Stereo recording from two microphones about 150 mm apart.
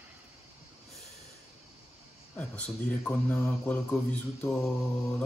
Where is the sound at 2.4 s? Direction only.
10° left (ahead or behind).